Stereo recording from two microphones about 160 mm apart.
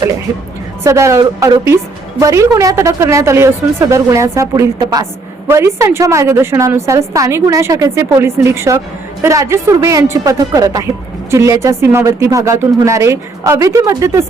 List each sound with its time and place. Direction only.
0.3 s a woman's voice: 20° right (ahead or behind)